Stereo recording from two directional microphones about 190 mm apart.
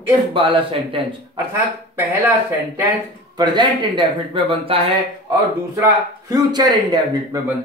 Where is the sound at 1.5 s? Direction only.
10° right (ahead or behind).